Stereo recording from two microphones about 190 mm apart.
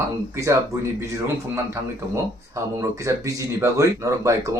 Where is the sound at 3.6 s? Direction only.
15° right (ahead or behind).